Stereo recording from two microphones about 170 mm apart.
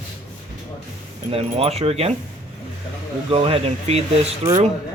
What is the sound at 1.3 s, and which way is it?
Speech, 35° right (ahead or behind).